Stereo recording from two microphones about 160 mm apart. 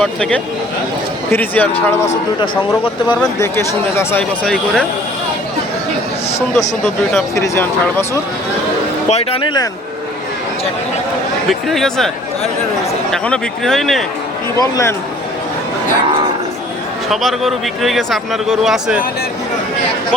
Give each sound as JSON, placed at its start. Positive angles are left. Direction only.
{"t": 0.0, "sound": "speech", "side_deg": 5}
{"t": 2.4, "sound": "speech", "side_deg": 30}
{"t": 3.3, "sound": "speech", "side_deg": 15}
{"t": 6.8, "sound": "speech", "side_deg": 0}
{"t": 7.3, "sound": "speech", "side_deg": 20}
{"t": 9.0, "sound": "speech", "side_deg": 40}
{"t": 11.7, "sound": "speech", "side_deg": 0}
{"t": 13.2, "sound": "speech", "side_deg": 5}
{"t": 14.6, "sound": "speech", "side_deg": 20}
{"t": 17.1, "sound": "speech", "side_deg": 0}